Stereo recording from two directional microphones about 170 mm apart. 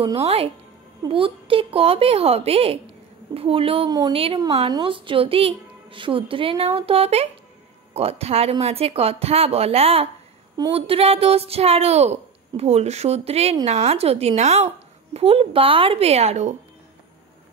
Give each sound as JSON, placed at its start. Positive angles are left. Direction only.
{"t": 0.0, "sound": "speech", "side_deg": -35}